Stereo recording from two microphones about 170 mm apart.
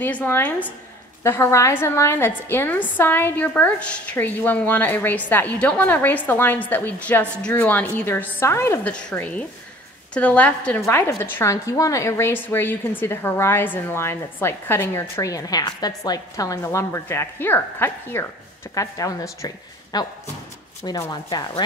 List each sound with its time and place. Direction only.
0.0 s a woman's voice: 10° left (ahead or behind)